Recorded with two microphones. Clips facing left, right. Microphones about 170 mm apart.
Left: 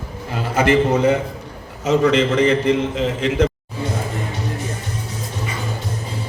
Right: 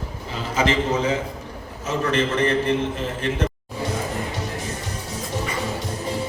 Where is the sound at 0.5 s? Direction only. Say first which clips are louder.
Left 5 dB; 60° left (ahead or behind); by 3.5 s 80° left.